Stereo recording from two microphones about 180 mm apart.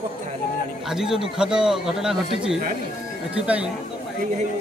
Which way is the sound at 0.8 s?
5° right (ahead or behind).